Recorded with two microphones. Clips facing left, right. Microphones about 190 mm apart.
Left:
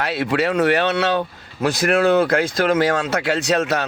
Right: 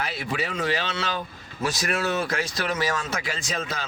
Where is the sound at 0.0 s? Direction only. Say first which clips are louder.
Left 9 dB; 70° left (ahead or behind).